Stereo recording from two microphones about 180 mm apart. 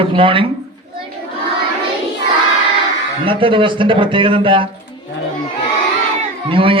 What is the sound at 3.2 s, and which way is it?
A man's voice, 30° right (ahead or behind).